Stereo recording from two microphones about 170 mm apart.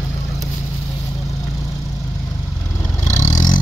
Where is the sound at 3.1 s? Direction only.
45° left (ahead or behind).